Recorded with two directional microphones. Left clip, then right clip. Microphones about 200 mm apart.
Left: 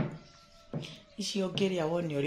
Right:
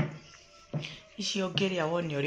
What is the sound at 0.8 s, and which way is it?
Speech, centre (ahead or behind).